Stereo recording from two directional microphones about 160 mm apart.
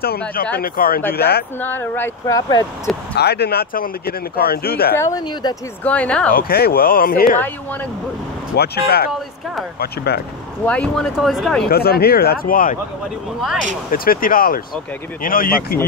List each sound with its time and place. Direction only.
0.6 s speech: 65° left (ahead or behind)
1.1 s speech: 80° left
1.6 s speech: 10° left (ahead or behind)
3.2 s speech: 90° left; by 4.9 s 70° left (ahead or behind)
4.9 s speech: 20° left (ahead or behind)
5.9 s speech: 5° left (ahead or behind)
6.3 s speech: 70° left (ahead or behind)
8.5 s speech: 80° left
10.6 s speech: 10° left (ahead or behind)
11.7 s speech: 75° left (ahead or behind)
13.9 s speech: 65° left (ahead or behind)